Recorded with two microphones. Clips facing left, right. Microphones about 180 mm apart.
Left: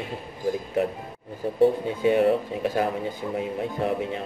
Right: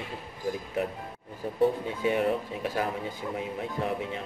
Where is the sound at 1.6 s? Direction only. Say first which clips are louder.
Left 5 dB; 25° left (ahead or behind).